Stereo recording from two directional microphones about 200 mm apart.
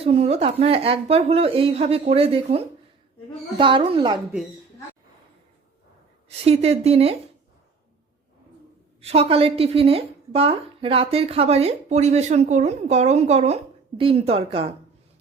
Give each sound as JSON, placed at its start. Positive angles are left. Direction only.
{"t": 0.0, "sound": "a woman's voice", "side_deg": -30}
{"t": 6.4, "sound": "a woman's voice", "side_deg": -30}
{"t": 9.0, "sound": "a woman's voice", "side_deg": -30}